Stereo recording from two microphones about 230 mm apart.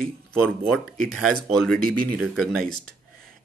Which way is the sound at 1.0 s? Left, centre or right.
Centre.